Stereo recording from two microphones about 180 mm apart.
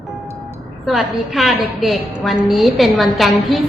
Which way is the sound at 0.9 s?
Centre (ahead or behind).